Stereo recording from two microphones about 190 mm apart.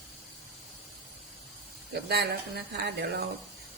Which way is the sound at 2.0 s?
60° right (ahead or behind).